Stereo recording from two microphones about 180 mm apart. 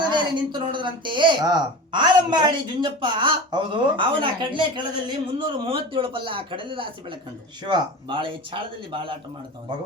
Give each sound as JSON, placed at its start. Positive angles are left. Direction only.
{"t": 0.0, "sound": "speech", "side_deg": -25}